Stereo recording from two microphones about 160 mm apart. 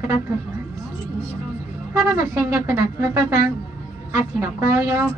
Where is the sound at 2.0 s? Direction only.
15° right (ahead or behind).